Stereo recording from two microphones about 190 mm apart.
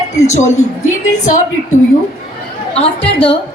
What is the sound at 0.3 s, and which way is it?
Speech, 40° left (ahead or behind).